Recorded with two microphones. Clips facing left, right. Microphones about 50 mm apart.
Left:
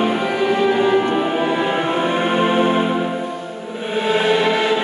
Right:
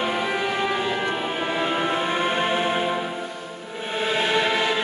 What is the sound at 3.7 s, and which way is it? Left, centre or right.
Music, centre.